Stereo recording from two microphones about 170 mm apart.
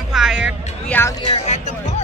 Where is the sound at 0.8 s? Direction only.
10° left (ahead or behind).